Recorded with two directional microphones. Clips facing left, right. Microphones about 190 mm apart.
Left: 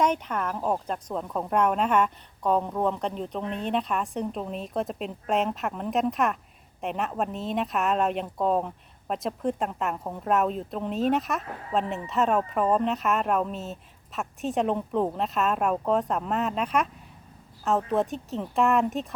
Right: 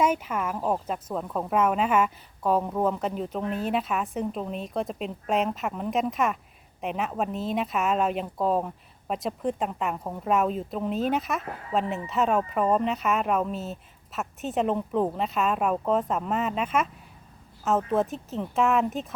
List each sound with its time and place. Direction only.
0.0 s speech: 5° right (ahead or behind)